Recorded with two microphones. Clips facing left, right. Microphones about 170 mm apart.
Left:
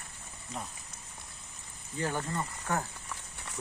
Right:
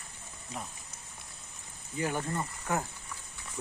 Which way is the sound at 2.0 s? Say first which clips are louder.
Right 1 dB; 15° right (ahead or behind).